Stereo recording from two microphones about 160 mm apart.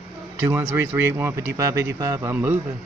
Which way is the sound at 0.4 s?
15° right (ahead or behind).